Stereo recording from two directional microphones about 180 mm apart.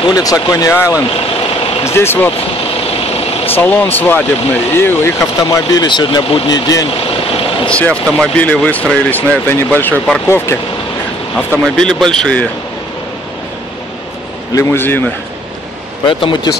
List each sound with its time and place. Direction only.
0.0 s speech: 20° left (ahead or behind)
3.5 s speech: 10° left (ahead or behind)
6.9 s vehicle: 30° left (ahead or behind)
7.7 s speech: 5° left (ahead or behind)
11.6 s speech: 5° left (ahead or behind)
14.5 s speech: 15° left (ahead or behind)
16.1 s speech: 25° left (ahead or behind)